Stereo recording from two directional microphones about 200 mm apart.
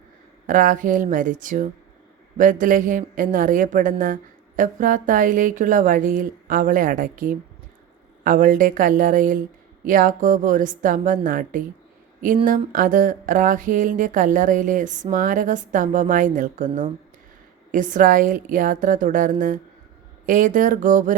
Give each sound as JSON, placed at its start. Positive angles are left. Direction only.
{"t": 0.4, "sound": "speech", "side_deg": -40}